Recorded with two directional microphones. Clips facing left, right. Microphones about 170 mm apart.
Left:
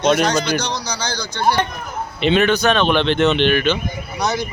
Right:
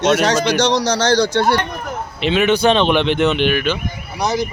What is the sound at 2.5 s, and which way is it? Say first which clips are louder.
Speech: right 2 dB; 25° right (ahead or behind).